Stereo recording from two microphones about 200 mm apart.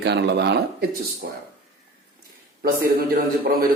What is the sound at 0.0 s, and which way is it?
Speech, 55° right (ahead or behind).